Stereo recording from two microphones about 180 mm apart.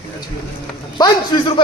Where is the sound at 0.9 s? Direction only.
25° left (ahead or behind).